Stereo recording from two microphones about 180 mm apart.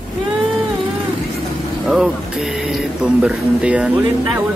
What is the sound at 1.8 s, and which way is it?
Speech, 5° right (ahead or behind).